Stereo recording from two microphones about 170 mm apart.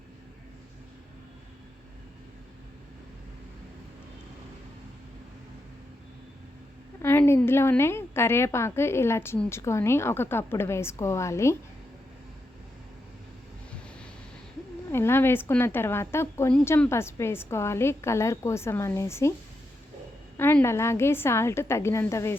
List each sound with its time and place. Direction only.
7.0 s a woman's voice: 15° left (ahead or behind)
14.9 s a woman's voice: 15° left (ahead or behind)
20.3 s a woman's voice: 10° left (ahead or behind)